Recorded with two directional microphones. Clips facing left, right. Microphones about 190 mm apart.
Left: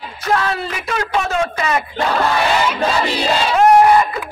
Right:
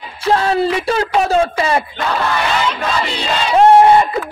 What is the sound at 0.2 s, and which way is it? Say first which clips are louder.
A man's voice: right 5 dB; 30° right (ahead or behind).